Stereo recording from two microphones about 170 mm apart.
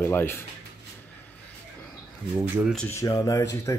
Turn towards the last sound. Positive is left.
turn(degrees=15)  # may be behind; listen again after turning